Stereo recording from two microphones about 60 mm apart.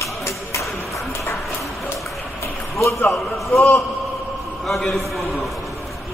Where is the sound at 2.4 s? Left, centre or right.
Left.